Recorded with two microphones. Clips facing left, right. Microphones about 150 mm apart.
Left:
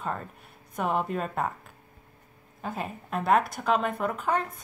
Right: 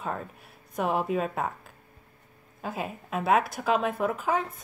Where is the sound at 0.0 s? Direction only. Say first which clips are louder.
Even; centre (ahead or behind).